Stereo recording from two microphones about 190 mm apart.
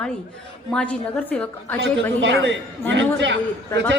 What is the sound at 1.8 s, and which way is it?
Speech, 70° right (ahead or behind).